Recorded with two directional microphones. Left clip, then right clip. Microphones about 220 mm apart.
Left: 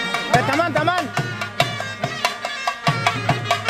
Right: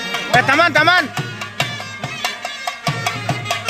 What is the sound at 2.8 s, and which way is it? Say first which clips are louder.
Music: left 2 dB; 30° right (ahead or behind).